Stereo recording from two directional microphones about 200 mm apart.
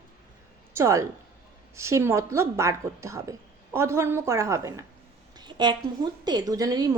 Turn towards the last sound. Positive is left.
turn(degrees=-20)  # may be behind; listen again after turning